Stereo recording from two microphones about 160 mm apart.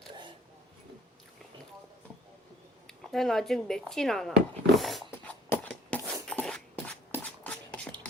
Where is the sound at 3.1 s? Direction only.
5° left (ahead or behind).